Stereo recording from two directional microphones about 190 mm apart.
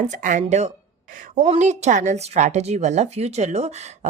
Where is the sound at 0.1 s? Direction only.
40° right (ahead or behind).